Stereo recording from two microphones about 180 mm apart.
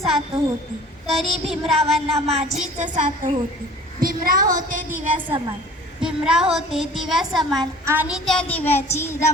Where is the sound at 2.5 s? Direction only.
45° right (ahead or behind).